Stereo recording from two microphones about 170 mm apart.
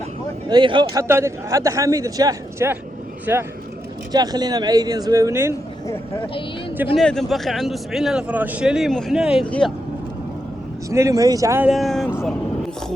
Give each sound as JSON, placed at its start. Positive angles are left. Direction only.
{"t": 0.4, "sound": "a man's voice", "side_deg": -25}
{"t": 1.0, "sound": "a man's voice", "side_deg": -15}
{"t": 6.9, "sound": "speech", "side_deg": 5}
{"t": 10.8, "sound": "speech", "side_deg": -20}
{"t": 11.7, "sound": "speech", "side_deg": 0}